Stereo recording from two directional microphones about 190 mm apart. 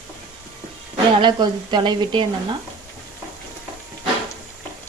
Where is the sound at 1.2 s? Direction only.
25° right (ahead or behind).